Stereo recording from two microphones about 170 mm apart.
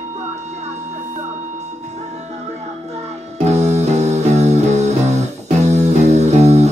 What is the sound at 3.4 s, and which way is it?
Music, 40° right (ahead or behind).